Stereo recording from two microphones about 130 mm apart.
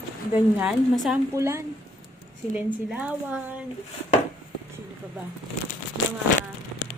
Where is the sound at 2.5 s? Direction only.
10° right (ahead or behind).